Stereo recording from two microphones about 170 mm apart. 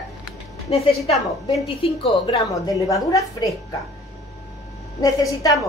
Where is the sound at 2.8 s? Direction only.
20° left (ahead or behind).